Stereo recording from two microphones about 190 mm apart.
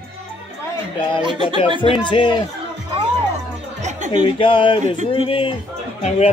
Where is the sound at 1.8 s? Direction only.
25° left (ahead or behind).